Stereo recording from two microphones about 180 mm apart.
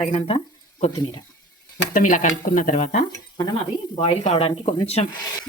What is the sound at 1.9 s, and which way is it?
Speech, 45° left (ahead or behind).